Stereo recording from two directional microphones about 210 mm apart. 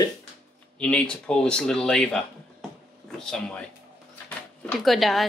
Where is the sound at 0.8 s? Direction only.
5° left (ahead or behind).